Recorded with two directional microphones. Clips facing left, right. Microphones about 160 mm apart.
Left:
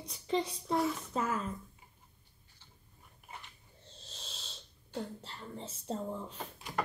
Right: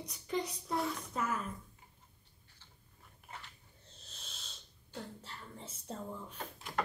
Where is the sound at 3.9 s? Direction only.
30° left (ahead or behind).